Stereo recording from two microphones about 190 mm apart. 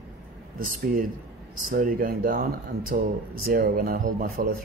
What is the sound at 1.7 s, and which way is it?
Speech, 50° right (ahead or behind).